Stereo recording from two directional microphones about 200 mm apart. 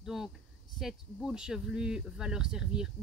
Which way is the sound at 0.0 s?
Centre (ahead or behind).